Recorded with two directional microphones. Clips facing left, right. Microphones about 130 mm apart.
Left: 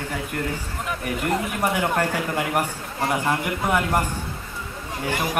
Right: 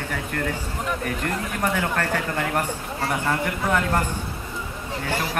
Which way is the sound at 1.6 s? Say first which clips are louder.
Even; 15° left (ahead or behind).